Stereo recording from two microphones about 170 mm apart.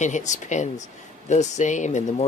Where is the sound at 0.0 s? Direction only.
45° left (ahead or behind).